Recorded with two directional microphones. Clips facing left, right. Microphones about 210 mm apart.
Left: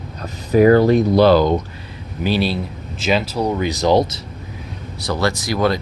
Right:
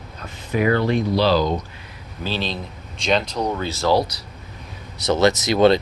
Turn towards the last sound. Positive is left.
turn(degrees=-25)  # may be behind; listen again after turning